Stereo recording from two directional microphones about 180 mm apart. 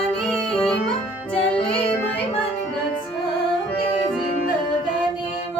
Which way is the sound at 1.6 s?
35° left (ahead or behind).